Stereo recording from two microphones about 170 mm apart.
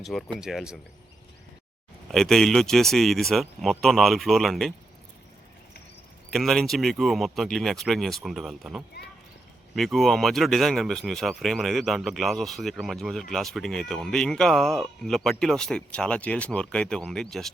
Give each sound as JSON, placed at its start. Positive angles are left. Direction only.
{"t": 0.0, "sound": "speech", "side_deg": 0}
{"t": 2.0, "sound": "speech", "side_deg": 0}
{"t": 6.3, "sound": "speech", "side_deg": 0}